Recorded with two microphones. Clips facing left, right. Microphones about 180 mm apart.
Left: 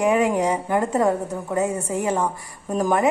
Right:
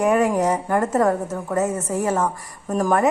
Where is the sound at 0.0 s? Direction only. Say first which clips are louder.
Right 1 dB; 10° left (ahead or behind).